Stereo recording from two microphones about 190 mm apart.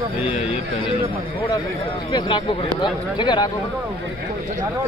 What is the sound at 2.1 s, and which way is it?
Speech, 25° left (ahead or behind).